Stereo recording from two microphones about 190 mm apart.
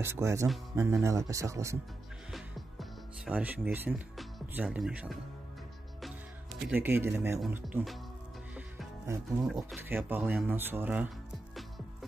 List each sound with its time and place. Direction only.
0.0 s speech: 15° right (ahead or behind)
2.3 s music: 5° right (ahead or behind)
4.2 s speech: 5° right (ahead or behind)
6.7 s speech: 10° right (ahead or behind)
8.5 s music: 10° right (ahead or behind)
9.8 s speech: 10° right (ahead or behind)